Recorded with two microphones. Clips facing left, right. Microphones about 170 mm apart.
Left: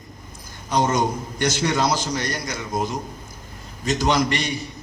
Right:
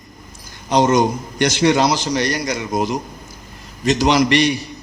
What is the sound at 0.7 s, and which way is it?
A man's voice, 80° right.